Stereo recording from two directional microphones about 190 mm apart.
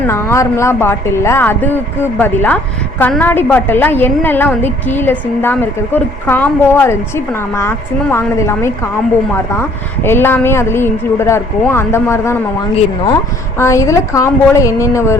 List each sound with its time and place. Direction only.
0.0 s a woman's voice: 15° left (ahead or behind)
13.6 s a woman's voice: 15° left (ahead or behind)